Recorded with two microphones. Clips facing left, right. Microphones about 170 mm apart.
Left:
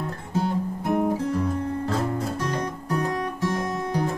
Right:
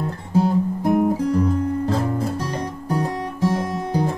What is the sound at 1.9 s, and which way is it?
Guitar, 30° right (ahead or behind).